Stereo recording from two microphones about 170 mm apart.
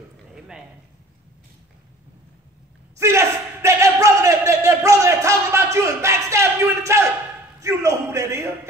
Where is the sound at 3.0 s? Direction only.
15° right (ahead or behind).